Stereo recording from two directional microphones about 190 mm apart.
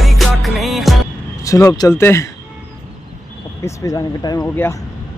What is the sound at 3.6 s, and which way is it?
Speech, 20° left (ahead or behind).